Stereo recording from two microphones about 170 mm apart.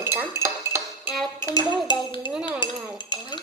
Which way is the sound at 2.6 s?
25° left (ahead or behind).